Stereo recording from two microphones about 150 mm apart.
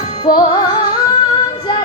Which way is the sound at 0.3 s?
25° left (ahead or behind).